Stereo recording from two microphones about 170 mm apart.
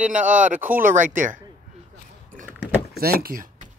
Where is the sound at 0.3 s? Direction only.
50° right (ahead or behind).